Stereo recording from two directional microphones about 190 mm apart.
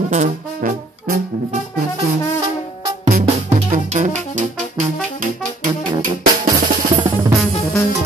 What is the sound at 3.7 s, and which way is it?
Music, 40° right (ahead or behind).